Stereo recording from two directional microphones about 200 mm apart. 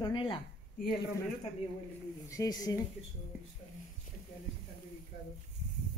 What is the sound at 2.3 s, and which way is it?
Speech, 15° left (ahead or behind).